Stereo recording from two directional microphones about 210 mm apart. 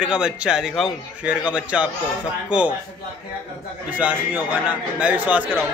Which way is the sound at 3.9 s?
5° right (ahead or behind).